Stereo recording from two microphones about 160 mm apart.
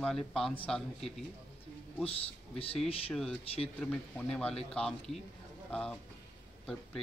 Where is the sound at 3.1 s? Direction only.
Centre (ahead or behind).